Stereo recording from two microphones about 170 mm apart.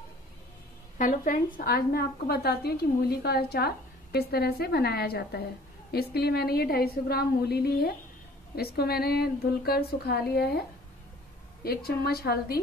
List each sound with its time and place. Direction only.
0.9 s a woman's voice: 50° left (ahead or behind); by 10.6 s 70° left (ahead or behind)
11.6 s a woman's voice: 65° left (ahead or behind)